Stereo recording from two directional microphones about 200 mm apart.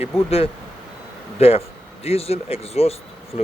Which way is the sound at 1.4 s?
30° left (ahead or behind).